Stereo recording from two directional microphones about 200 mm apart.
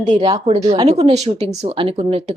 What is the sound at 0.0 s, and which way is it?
A woman's voice, 35° right (ahead or behind).